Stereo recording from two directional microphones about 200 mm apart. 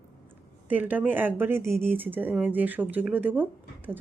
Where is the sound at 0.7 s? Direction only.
10° right (ahead or behind).